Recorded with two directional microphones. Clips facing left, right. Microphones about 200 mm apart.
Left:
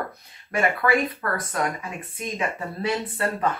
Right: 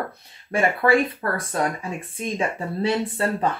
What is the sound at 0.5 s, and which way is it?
Speech, 30° right (ahead or behind).